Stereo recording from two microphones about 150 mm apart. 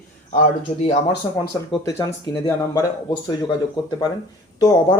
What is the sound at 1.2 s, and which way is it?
Speech, 30° left (ahead or behind).